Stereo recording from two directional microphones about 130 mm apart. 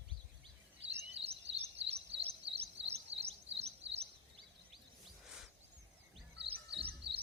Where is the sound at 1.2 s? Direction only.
50° right (ahead or behind).